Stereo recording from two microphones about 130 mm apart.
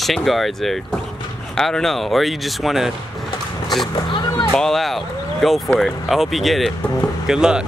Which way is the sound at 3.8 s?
35° left (ahead or behind).